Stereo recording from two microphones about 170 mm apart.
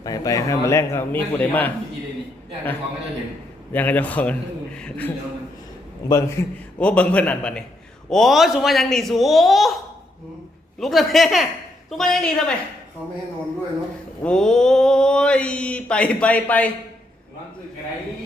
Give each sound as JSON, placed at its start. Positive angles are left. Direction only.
{"t": 0.0, "sound": "mantra", "side_deg": 20}
{"t": 3.7, "sound": "mantra", "side_deg": 10}
{"t": 8.1, "sound": "speech", "side_deg": 0}
{"t": 10.8, "sound": "speech", "side_deg": 0}
{"t": 14.3, "sound": "mantra", "side_deg": 5}